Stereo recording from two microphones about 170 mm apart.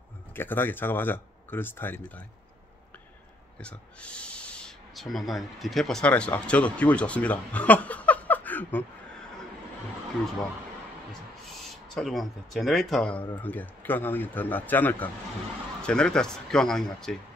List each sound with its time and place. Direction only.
0.3 s speech: 10° left (ahead or behind)
3.5 s speech: 5° left (ahead or behind)
11.9 s speech: centre (ahead or behind)